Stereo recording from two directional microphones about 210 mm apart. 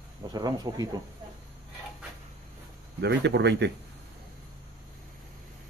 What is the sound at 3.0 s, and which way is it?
Speech, 55° right (ahead or behind).